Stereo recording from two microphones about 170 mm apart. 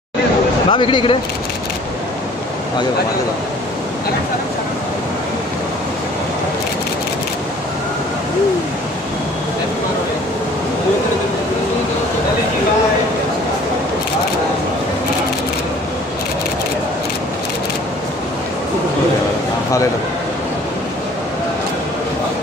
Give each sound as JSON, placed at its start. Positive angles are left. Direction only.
{"t": 0.7, "sound": "speech", "side_deg": 30}